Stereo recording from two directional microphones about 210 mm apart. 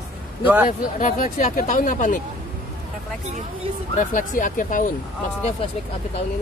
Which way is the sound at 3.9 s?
40° left (ahead or behind).